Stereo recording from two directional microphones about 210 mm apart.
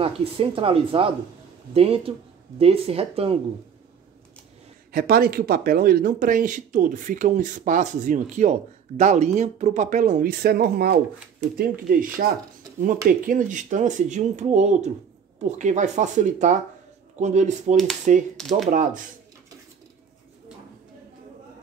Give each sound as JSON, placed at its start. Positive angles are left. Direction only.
{"t": 0.0, "sound": "speech", "side_deg": -25}
{"t": 4.9, "sound": "speech", "side_deg": -45}
{"t": 18.3, "sound": "speech", "side_deg": 0}
{"t": 18.7, "sound": "speech", "side_deg": -40}